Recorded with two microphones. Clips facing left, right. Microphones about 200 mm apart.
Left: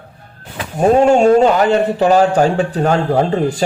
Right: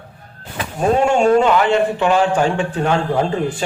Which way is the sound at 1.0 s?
40° left (ahead or behind).